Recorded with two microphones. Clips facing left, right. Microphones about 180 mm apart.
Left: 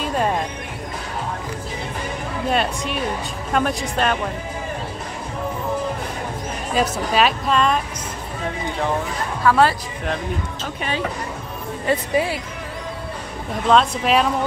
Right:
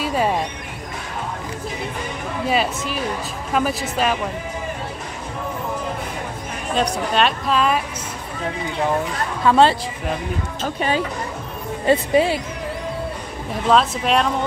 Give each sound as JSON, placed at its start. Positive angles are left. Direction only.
{"t": 0.0, "sound": "music", "side_deg": -5}
{"t": 2.4, "sound": "a woman's voice", "side_deg": -5}
{"t": 6.7, "sound": "a woman's voice", "side_deg": 5}
{"t": 9.4, "sound": "speech", "side_deg": -25}
{"t": 11.8, "sound": "speech", "side_deg": -25}
{"t": 13.7, "sound": "a woman's voice", "side_deg": 0}